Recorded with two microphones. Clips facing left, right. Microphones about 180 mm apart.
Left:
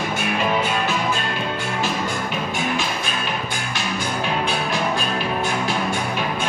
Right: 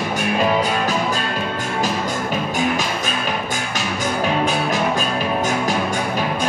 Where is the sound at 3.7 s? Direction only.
45° right (ahead or behind).